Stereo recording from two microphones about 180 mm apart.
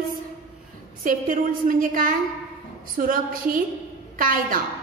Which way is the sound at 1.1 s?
50° right (ahead or behind).